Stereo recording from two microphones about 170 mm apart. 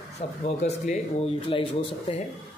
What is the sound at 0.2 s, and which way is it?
Speech, 35° left (ahead or behind).